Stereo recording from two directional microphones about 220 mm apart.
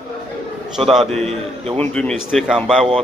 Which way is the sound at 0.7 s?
Centre (ahead or behind).